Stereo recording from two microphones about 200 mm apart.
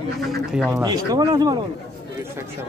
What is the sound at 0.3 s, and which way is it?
Speech, centre (ahead or behind).